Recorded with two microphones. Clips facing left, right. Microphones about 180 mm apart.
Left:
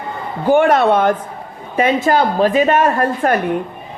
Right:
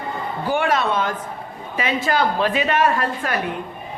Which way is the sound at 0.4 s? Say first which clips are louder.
Left 9 dB; 50° left (ahead or behind).